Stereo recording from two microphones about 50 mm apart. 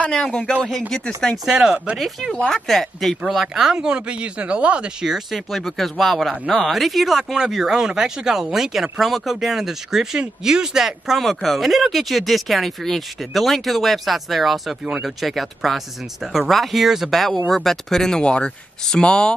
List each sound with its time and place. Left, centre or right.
0.1 s speech: centre
0.7 s speech: centre
1.4 s speech: centre
3.7 s speech: centre
6.4 s speech: centre